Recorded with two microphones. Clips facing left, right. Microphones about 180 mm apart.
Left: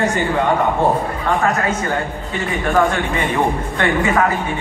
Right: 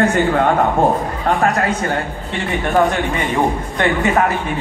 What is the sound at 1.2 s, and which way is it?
Speech, 35° right (ahead or behind).